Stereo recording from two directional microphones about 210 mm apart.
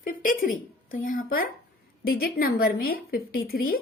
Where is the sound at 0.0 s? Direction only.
40° left (ahead or behind).